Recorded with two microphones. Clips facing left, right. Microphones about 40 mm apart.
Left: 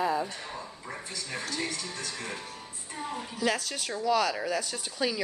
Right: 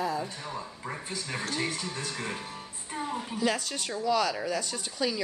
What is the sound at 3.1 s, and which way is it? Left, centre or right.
Speech, centre.